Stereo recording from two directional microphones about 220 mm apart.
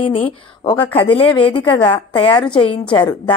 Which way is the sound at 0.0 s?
25° left (ahead or behind).